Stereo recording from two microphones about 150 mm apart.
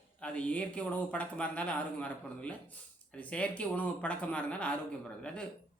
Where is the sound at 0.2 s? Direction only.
10° left (ahead or behind).